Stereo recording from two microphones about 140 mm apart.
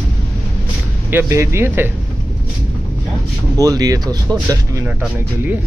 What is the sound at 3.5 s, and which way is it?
Speech, 25° right (ahead or behind).